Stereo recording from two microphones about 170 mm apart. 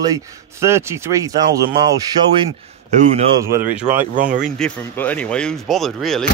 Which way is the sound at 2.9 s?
45° right (ahead or behind).